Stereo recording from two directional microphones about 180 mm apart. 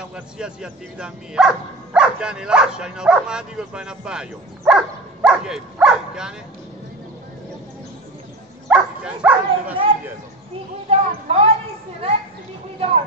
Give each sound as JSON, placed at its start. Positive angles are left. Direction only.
{"t": 0.0, "sound": "speech", "side_deg": -5}
{"t": 8.6, "sound": "bow-wow", "side_deg": -5}
{"t": 10.9, "sound": "speech", "side_deg": -35}